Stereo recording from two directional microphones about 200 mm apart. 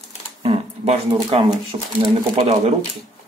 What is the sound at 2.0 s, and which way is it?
Speech, 30° right (ahead or behind).